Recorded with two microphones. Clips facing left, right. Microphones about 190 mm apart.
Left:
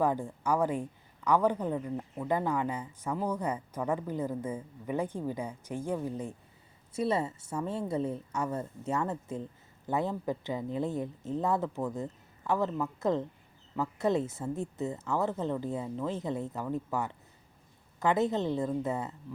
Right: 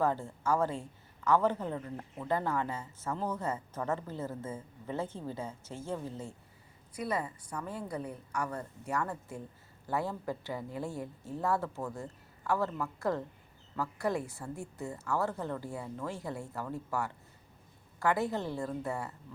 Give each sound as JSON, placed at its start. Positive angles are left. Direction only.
{"t": 0.0, "sound": "a woman's voice", "side_deg": 15}